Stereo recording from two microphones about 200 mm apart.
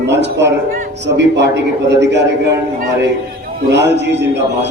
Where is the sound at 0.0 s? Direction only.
60° right (ahead or behind).